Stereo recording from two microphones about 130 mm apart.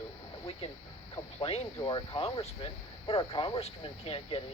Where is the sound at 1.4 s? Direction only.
50° left (ahead or behind).